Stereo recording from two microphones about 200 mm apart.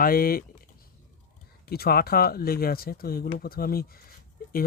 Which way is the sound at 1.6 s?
50° left (ahead or behind).